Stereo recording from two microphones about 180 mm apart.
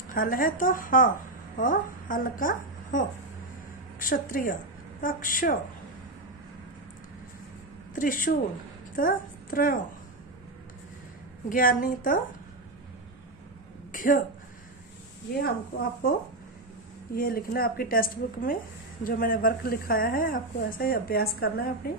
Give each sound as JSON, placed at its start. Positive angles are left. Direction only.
{"t": 0.1, "sound": "a woman's voice", "side_deg": 50}
{"t": 7.9, "sound": "a woman's voice", "side_deg": 50}
{"t": 11.4, "sound": "speech", "side_deg": 50}
{"t": 13.9, "sound": "a woman's voice", "side_deg": 50}
{"t": 16.0, "sound": "speech", "side_deg": 55}